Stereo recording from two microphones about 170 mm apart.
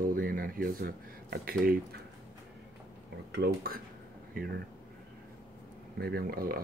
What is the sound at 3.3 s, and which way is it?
Speech, 65° right (ahead or behind).